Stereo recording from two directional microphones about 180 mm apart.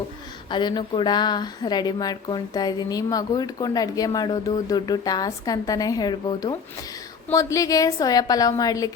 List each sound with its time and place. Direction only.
0.5 s speech: 25° left (ahead or behind)